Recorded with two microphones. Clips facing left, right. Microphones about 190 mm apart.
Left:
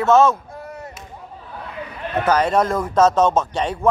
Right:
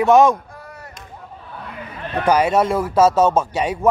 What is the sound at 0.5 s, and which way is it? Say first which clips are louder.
Chop: left 5 dB; 20° left (ahead or behind).